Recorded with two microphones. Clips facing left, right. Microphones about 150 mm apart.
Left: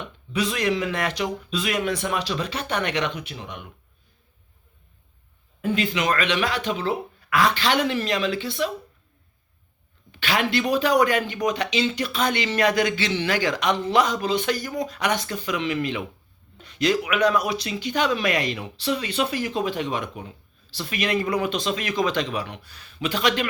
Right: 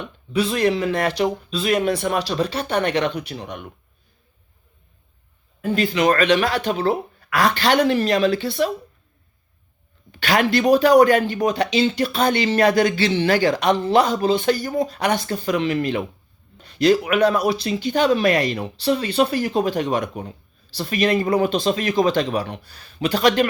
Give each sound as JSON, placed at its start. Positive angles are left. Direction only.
{"t": 0.3, "sound": "speech", "side_deg": -30}
{"t": 5.7, "sound": "speech", "side_deg": -40}
{"t": 10.1, "sound": "speech", "side_deg": -45}